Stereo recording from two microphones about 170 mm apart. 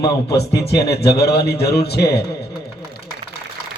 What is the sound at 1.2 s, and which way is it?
Speech, 70° left (ahead or behind).